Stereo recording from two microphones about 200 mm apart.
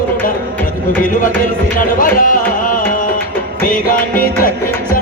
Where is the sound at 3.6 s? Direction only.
45° left (ahead or behind).